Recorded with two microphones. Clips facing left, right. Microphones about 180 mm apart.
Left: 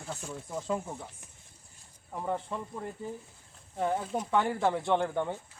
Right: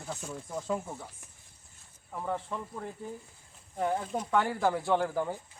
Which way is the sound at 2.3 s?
5° left (ahead or behind).